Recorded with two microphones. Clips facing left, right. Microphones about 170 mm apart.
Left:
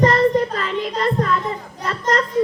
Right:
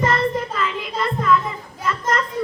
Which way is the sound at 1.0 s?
40° left (ahead or behind).